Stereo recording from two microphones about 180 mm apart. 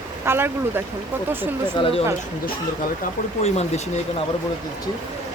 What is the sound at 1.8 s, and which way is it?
Speech, 30° left (ahead or behind).